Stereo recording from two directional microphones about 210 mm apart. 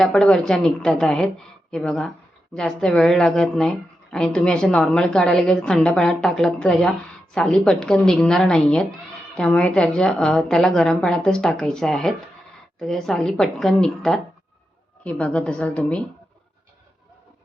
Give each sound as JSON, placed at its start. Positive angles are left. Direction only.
{"t": 0.0, "sound": "a woman's voice", "side_deg": 5}